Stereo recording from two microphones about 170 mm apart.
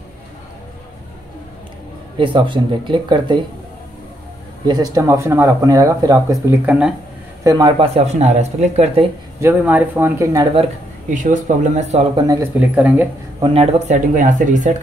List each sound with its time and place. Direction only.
2.1 s speech: 30° right (ahead or behind)
4.6 s speech: 25° right (ahead or behind)
7.8 s speech: 40° right (ahead or behind)
9.4 s speech: 10° right (ahead or behind); by 10.7 s 30° right (ahead or behind)
11.1 s speech: 45° right (ahead or behind)
12.2 s speech: 20° right (ahead or behind)
12.5 s speech: 10° right (ahead or behind)
13.4 s speech: 35° right (ahead or behind); by 14.7 s 50° right (ahead or behind)